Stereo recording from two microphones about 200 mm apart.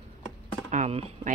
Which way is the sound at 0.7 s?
30° right (ahead or behind).